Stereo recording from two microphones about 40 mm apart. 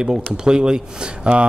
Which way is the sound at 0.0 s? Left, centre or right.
Right.